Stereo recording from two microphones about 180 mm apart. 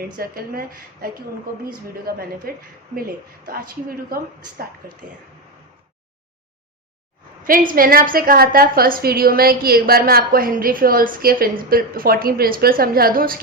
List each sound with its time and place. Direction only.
0.2 s a woman's voice: 55° right (ahead or behind)
2.0 s a woman's voice: 55° right (ahead or behind)
3.5 s a woman's voice: 55° right (ahead or behind)
7.4 s a woman's voice: 50° right (ahead or behind)